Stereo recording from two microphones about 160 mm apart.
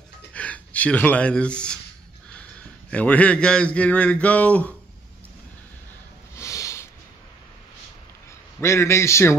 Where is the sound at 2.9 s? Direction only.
10° left (ahead or behind).